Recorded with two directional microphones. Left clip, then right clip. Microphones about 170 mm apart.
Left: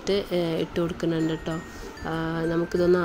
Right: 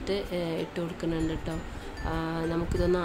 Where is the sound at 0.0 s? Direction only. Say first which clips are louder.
Left 6 dB; 20° left (ahead or behind).